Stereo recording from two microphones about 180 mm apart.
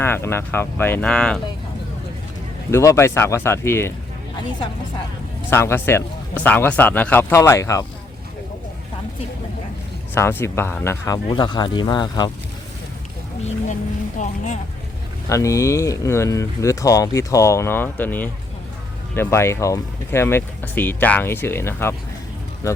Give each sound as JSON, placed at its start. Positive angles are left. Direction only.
{"t": 0.0, "sound": "speech", "side_deg": 10}
{"t": 2.7, "sound": "speech", "side_deg": 15}
{"t": 5.5, "sound": "speech", "side_deg": 15}
{"t": 10.2, "sound": "speech", "side_deg": 15}
{"t": 14.2, "sound": "speech", "side_deg": 45}
{"t": 15.3, "sound": "speech", "side_deg": 15}